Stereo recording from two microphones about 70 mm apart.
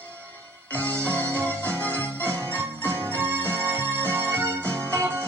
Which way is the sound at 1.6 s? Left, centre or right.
Left.